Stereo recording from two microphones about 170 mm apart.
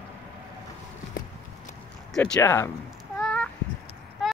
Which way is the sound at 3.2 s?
5° left (ahead or behind).